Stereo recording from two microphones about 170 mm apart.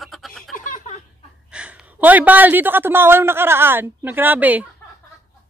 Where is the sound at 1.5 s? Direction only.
5° right (ahead or behind).